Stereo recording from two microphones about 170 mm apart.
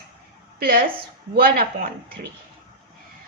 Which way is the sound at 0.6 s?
60° right (ahead or behind).